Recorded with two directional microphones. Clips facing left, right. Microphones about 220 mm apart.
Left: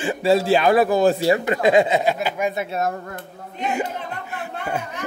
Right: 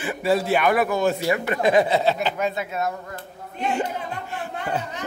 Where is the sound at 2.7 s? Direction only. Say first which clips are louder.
Left 3 dB; 45° left (ahead or behind).